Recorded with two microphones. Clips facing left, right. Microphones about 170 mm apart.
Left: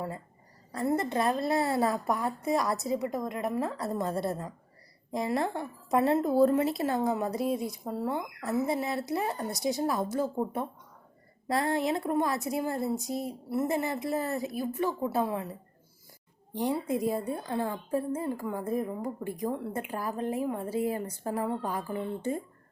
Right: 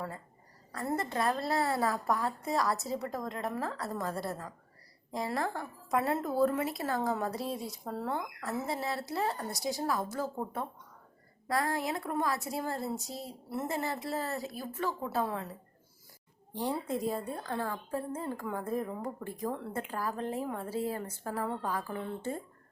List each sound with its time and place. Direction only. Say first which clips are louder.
0.7 s a woman's voice: left 5 dB; 20° left (ahead or behind)
16.5 s a woman's voice: left 4 dB; 15° left (ahead or behind)